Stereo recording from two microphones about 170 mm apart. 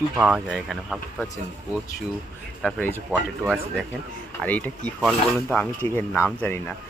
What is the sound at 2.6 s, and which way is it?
Speech, 10° left (ahead or behind).